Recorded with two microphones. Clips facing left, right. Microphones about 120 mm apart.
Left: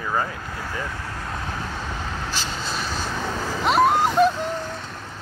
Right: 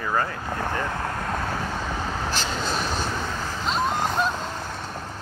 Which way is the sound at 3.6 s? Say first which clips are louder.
Left 7 dB; 65° left (ahead or behind).